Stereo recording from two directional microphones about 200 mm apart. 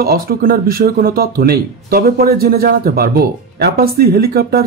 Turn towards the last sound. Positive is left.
turn(degrees=-50)  # may be behind; listen again after turning